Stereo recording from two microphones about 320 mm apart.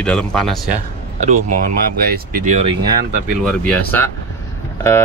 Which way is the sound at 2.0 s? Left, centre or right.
Right.